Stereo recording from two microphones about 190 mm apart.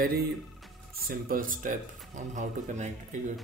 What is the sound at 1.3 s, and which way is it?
Speech, 45° right (ahead or behind).